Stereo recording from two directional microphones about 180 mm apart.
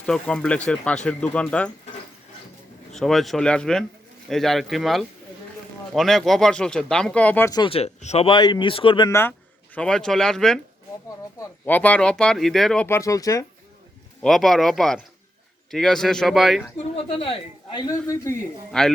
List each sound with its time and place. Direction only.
0.0 s speech: 5° left (ahead or behind)
2.9 s speech: centre (ahead or behind)
7.6 s speech: 35° left (ahead or behind)
9.0 s speech: 15° left (ahead or behind)
14.2 s speech: centre (ahead or behind)
16.7 s speech: 30° left (ahead or behind)
18.7 s speech: 5° left (ahead or behind)